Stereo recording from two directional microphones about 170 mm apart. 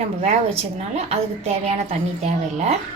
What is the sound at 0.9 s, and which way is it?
A woman's voice, 40° right (ahead or behind).